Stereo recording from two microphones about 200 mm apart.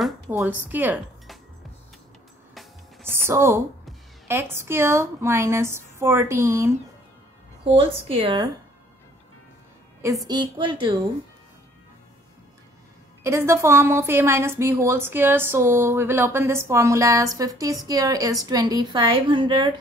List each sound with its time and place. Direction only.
0.3 s a woman's voice: 10° right (ahead or behind)
3.1 s a woman's voice: 10° right (ahead or behind)
7.6 s speech: 25° right (ahead or behind)
10.2 s speech: 20° right (ahead or behind)
13.2 s a woman's voice: 15° right (ahead or behind)